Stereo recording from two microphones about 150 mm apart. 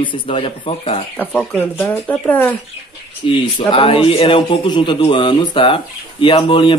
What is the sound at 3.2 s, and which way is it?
A man's voice, 40° left (ahead or behind).